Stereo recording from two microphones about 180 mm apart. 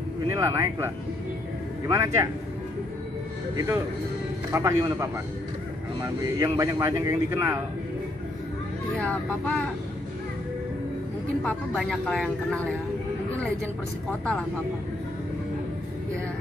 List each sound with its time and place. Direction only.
0.3 s speech: 15° right (ahead or behind)
3.5 s speech: 15° right (ahead or behind)
8.9 s speech: 5° left (ahead or behind)
11.4 s speech: 5° left (ahead or behind)